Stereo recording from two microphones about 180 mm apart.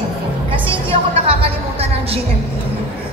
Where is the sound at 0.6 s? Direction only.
35° right (ahead or behind).